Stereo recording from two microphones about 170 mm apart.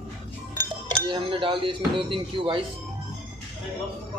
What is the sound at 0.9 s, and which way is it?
Speech, 30° right (ahead or behind).